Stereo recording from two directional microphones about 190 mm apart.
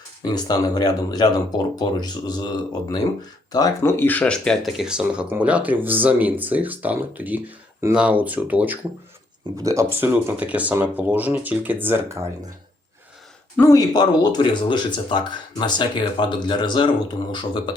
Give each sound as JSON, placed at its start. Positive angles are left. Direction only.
{"t": 0.3, "sound": "speech", "side_deg": 20}
{"t": 13.6, "sound": "speech", "side_deg": 15}